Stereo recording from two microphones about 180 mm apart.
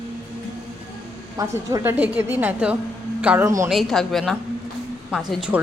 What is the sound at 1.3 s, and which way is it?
A woman's voice, 20° right (ahead or behind).